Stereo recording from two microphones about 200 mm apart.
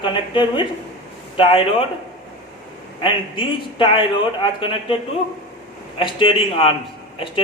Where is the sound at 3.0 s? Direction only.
25° left (ahead or behind).